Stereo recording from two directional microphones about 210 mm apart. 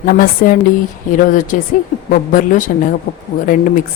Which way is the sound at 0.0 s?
40° left (ahead or behind).